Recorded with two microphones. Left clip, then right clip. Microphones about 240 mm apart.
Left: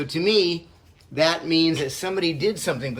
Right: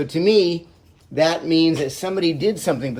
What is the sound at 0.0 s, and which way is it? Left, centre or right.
Speech, centre.